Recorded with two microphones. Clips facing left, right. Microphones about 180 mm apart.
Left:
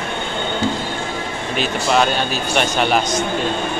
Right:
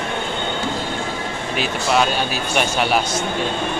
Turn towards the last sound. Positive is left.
turn(degrees=-5)  # may be behind; listen again after turning